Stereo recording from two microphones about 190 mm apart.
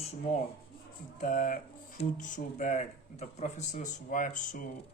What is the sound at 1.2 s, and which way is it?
Speech, 45° left (ahead or behind).